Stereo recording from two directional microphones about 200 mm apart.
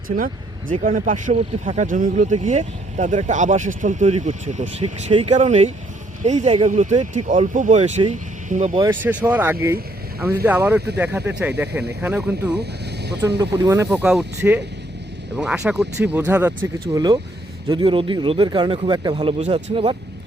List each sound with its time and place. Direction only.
0.9 s speech: 40° right (ahead or behind)
8.9 s speech: 10° right (ahead or behind)
16.9 s speech: 20° right (ahead or behind)